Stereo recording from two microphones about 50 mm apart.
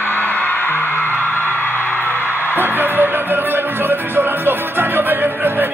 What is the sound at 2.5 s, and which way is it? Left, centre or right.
Music, right.